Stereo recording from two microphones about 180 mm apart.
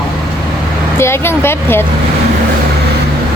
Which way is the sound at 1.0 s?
15° left (ahead or behind).